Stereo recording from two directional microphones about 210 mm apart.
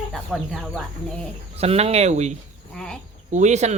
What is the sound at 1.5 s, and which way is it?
Speech, 30° right (ahead or behind).